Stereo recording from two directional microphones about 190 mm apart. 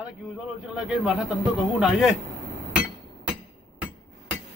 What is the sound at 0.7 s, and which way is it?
A man's voice, centre (ahead or behind).